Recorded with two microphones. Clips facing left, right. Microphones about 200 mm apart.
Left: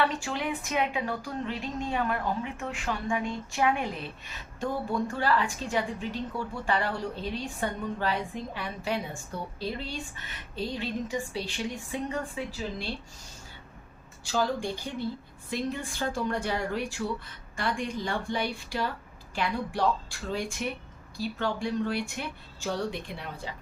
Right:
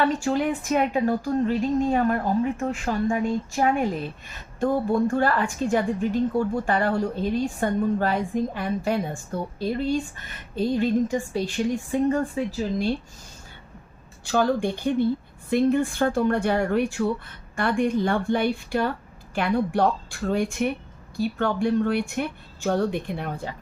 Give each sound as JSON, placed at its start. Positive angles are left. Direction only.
{"t": 0.0, "sound": "a woman's voice", "side_deg": -45}
{"t": 14.3, "sound": "a woman's voice", "side_deg": -60}